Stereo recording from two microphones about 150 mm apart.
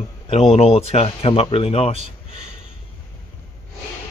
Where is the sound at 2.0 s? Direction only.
50° right (ahead or behind).